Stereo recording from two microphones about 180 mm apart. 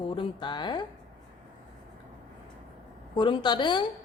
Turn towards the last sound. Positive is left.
turn(degrees=25)  # may be behind; listen again after turning